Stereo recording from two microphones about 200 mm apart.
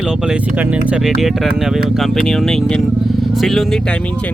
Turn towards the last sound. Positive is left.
turn(degrees=5)  # may be behind; listen again after turning